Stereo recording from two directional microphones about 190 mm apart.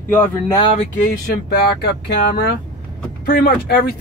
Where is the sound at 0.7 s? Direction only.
45° left (ahead or behind).